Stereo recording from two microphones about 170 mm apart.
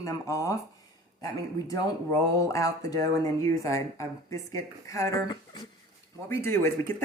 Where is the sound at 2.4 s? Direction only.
20° left (ahead or behind).